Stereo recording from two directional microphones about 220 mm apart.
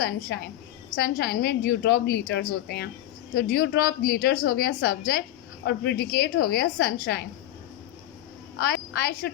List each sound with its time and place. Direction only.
0.0 s a woman's voice: 50° left (ahead or behind)
8.6 s a woman's voice: 45° left (ahead or behind)